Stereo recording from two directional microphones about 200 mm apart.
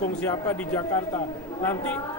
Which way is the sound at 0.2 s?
10° left (ahead or behind).